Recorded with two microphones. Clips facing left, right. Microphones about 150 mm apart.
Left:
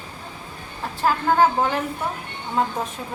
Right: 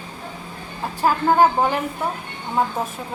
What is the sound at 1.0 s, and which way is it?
Speech, 15° right (ahead or behind).